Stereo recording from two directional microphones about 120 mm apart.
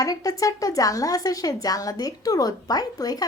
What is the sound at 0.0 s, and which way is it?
A woman's voice, 30° left (ahead or behind).